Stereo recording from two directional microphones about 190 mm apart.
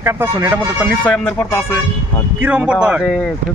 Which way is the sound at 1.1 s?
10° left (ahead or behind).